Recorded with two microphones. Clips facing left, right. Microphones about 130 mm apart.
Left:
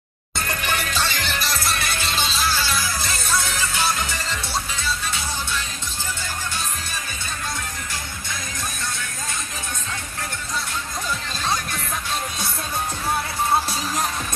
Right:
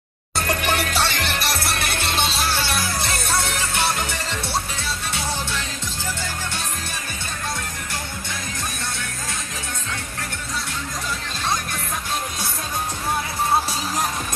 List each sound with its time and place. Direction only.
0.4 s music: 65° right (ahead or behind)